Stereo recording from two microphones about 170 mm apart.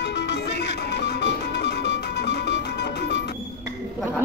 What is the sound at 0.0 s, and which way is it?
Music, 85° left.